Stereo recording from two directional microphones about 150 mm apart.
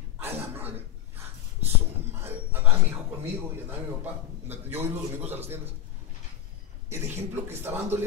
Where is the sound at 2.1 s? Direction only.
15° right (ahead or behind).